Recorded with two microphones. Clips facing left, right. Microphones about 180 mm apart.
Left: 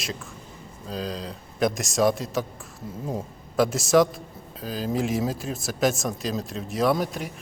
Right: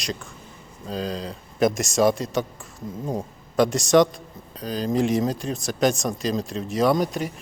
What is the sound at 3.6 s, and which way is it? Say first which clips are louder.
Speech: right 2 dB; centre (ahead or behind).